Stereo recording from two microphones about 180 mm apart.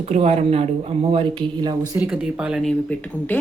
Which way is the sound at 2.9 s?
10° left (ahead or behind).